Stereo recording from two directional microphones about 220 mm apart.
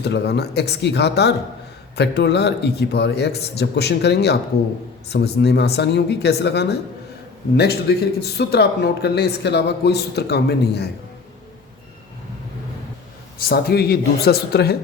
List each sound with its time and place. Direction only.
0.0 s speech: 50° left (ahead or behind)
13.5 s speech: 45° left (ahead or behind)